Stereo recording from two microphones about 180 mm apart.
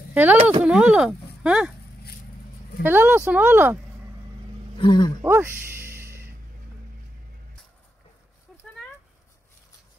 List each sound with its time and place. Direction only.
0.1 s speech: 10° right (ahead or behind)
0.4 s speech: 35° right (ahead or behind)
0.7 s speech: 5° right (ahead or behind)
2.8 s speech: 10° right (ahead or behind)
4.7 s speech: 25° left (ahead or behind)
5.2 s a sound: 15° right (ahead or behind)